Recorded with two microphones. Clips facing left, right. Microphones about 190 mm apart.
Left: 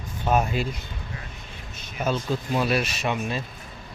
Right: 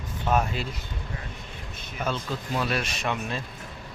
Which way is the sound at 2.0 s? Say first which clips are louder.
Left 4 dB; 10° left (ahead or behind).